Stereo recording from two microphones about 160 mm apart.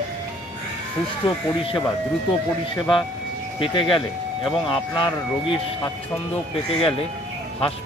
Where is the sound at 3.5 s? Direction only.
30° left (ahead or behind).